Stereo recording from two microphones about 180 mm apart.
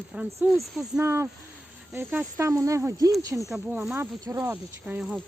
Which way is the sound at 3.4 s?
5° right (ahead or behind).